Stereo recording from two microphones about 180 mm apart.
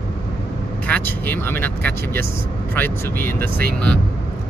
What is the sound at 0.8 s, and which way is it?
Speech, 10° left (ahead or behind).